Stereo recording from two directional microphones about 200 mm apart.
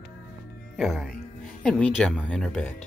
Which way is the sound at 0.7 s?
Centre (ahead or behind).